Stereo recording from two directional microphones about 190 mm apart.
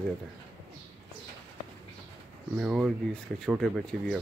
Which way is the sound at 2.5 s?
5° right (ahead or behind).